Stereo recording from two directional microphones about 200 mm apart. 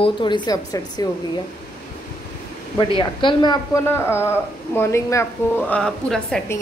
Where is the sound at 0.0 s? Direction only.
25° left (ahead or behind).